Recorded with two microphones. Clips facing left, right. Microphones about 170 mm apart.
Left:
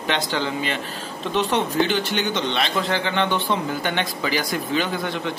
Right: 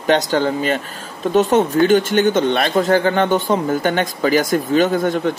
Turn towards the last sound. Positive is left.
turn(degrees=-45)  # may be behind; listen again after turning